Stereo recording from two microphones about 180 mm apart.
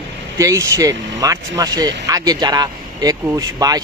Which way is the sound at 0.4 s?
20° right (ahead or behind).